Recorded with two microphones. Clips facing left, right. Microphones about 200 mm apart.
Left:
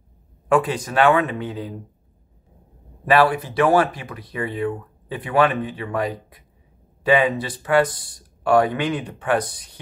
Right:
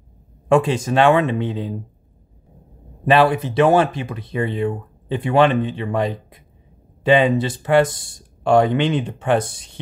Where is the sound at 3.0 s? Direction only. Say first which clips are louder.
Right 2 dB; 25° right (ahead or behind).